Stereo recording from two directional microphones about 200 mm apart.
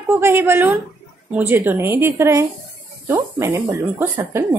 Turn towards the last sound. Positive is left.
turn(degrees=-15)  # may be behind; listen again after turning